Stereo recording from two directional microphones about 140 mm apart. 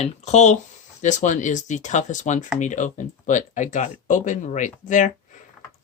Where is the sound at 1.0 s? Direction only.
60° left (ahead or behind).